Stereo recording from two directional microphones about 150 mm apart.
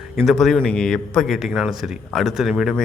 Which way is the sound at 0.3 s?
Centre (ahead or behind).